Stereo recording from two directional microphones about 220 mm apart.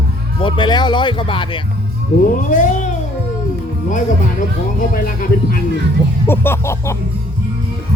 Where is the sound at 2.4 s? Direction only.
35° left (ahead or behind).